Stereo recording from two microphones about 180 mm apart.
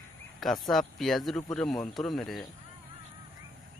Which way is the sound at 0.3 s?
Centre (ahead or behind).